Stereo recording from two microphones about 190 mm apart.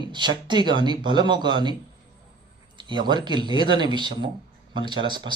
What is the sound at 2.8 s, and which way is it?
A man's voice, 25° right (ahead or behind).